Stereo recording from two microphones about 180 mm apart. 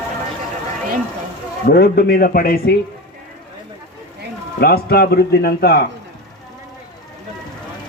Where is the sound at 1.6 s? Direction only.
60° left (ahead or behind).